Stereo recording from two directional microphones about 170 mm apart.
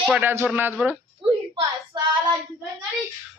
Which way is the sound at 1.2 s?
30° right (ahead or behind).